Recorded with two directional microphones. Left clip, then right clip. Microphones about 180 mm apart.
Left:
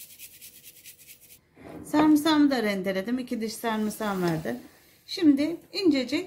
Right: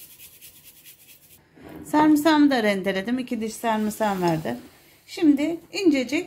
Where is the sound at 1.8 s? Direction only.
15° right (ahead or behind).